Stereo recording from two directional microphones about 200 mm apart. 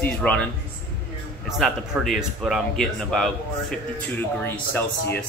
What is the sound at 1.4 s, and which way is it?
Speech, centre (ahead or behind).